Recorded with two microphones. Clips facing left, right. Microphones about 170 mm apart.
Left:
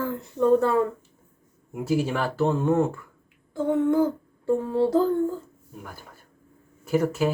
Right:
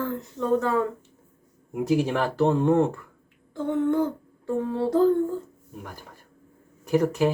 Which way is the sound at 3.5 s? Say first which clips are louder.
Left 2 dB; 5° left (ahead or behind).